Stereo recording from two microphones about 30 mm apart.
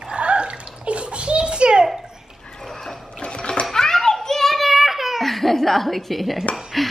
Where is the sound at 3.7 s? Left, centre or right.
Centre.